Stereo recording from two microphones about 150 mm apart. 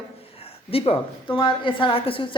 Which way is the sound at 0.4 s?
40° left (ahead or behind).